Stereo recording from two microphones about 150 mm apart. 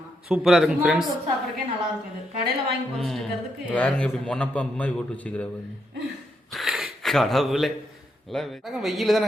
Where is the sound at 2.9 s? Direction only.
Centre (ahead or behind).